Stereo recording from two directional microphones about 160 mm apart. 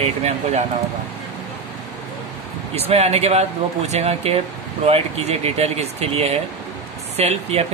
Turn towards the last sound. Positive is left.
turn(degrees=-40)  # may be behind; listen again after turning